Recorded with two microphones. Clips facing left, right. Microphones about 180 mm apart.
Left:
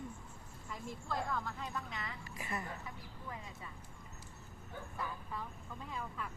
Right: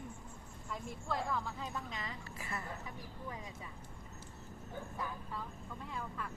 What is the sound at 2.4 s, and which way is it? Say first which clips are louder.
Speech: left 3 dB; 20° left (ahead or behind).